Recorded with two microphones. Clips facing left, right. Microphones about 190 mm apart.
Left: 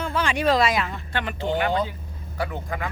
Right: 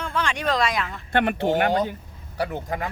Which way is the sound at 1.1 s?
55° right (ahead or behind).